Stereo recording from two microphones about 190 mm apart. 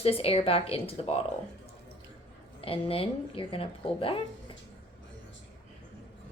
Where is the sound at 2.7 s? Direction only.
30° left (ahead or behind).